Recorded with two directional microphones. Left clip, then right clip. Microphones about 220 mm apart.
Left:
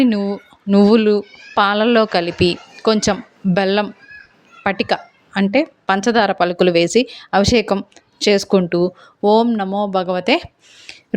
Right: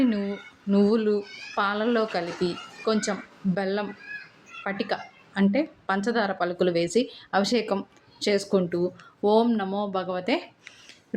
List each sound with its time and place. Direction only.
0.0 s a woman's voice: 40° left (ahead or behind)